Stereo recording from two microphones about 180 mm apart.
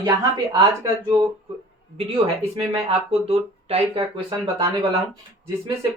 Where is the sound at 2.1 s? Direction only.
30° right (ahead or behind).